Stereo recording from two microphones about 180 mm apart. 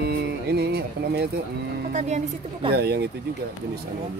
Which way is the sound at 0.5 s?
65° right (ahead or behind).